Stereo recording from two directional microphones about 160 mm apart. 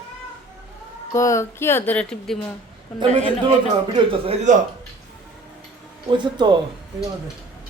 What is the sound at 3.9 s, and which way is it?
Speech, 35° right (ahead or behind).